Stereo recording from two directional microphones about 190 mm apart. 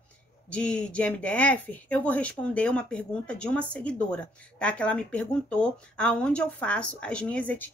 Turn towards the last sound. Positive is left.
turn(degrees=10)  # may be behind; listen again after turning